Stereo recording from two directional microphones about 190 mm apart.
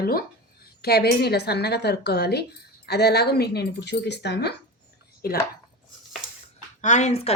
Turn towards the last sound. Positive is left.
turn(degrees=35)  # may be behind; listen again after turning